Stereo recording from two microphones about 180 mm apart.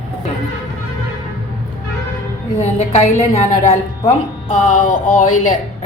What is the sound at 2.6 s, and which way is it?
A woman's voice, 40° left (ahead or behind).